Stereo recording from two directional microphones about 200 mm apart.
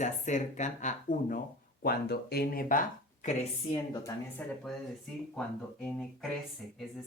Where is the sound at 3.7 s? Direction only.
20° left (ahead or behind).